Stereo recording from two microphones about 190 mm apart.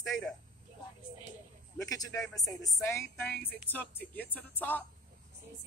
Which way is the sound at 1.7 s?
20° left (ahead or behind).